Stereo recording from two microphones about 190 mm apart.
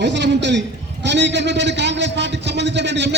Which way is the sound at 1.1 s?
65° right (ahead or behind).